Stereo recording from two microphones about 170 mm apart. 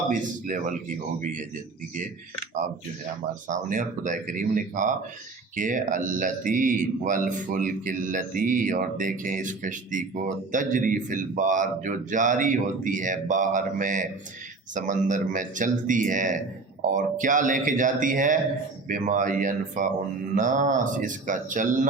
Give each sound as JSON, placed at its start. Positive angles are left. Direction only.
{"t": 0.1, "sound": "speech", "side_deg": -50}
{"t": 3.5, "sound": "speech", "side_deg": -45}